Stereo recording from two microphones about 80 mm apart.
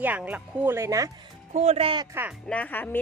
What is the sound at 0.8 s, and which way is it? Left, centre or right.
Speech, right.